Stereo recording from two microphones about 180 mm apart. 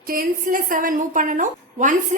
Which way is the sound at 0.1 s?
50° right (ahead or behind).